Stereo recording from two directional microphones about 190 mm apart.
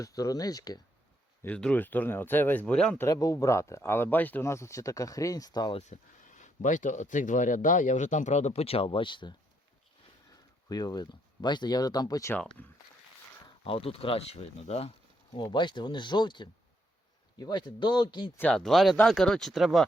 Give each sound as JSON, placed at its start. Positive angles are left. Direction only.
{"t": 0.0, "sound": "speech", "side_deg": 20}
{"t": 1.5, "sound": "speech", "side_deg": 5}
{"t": 3.1, "sound": "speech", "side_deg": 20}
{"t": 5.9, "sound": "speech", "side_deg": 40}
{"t": 10.7, "sound": "speech", "side_deg": 20}
{"t": 13.7, "sound": "speech", "side_deg": 30}
{"t": 18.3, "sound": "speech", "side_deg": 5}